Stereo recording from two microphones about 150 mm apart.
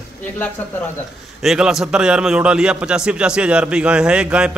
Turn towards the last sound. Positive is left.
turn(degrees=-5)  # may be behind; listen again after turning